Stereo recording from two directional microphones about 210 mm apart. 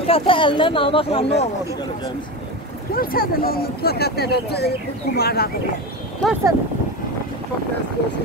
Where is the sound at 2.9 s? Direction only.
45° left (ahead or behind).